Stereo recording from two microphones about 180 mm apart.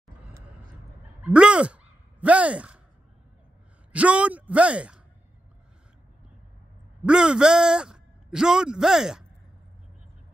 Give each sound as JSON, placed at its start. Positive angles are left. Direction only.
{"t": 1.2, "sound": "a sound", "side_deg": -5}
{"t": 3.9, "sound": "a man's voice", "side_deg": -5}
{"t": 7.0, "sound": "a man's voice", "side_deg": -5}